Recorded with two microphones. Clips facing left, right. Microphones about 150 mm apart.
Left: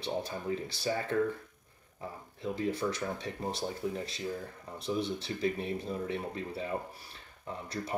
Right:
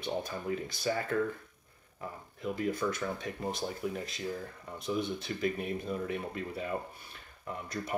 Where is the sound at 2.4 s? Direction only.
30° left (ahead or behind).